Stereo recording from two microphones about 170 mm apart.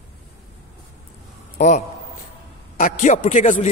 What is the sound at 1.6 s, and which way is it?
A man's voice, 45° left (ahead or behind).